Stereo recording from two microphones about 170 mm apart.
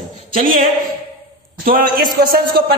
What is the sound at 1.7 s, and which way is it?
A woman's voice, 60° right (ahead or behind).